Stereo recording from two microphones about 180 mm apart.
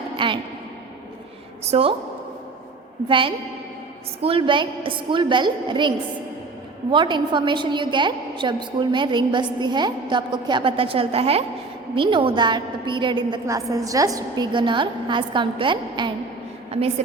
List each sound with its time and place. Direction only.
0.2 s speech: 30° right (ahead or behind)
1.7 s a woman's voice: 30° right (ahead or behind)
3.1 s a woman's voice: 30° right (ahead or behind)
6.9 s a woman's voice: 25° right (ahead or behind)